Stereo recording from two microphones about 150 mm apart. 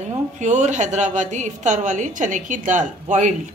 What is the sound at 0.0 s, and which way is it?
A woman's voice, 55° right (ahead or behind).